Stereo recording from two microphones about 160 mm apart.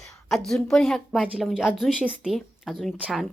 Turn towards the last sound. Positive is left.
turn(degrees=0)  # may be behind; listen again after turning